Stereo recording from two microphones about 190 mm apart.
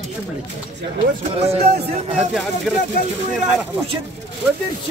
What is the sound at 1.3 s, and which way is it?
Speech, 35° right (ahead or behind).